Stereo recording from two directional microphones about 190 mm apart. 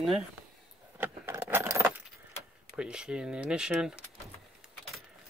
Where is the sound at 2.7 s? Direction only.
5° right (ahead or behind).